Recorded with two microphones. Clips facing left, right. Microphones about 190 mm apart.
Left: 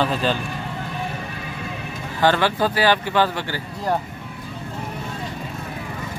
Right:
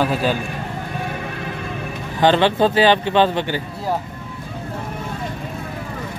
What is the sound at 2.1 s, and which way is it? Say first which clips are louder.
Speech: right 4 dB; 20° right (ahead or behind).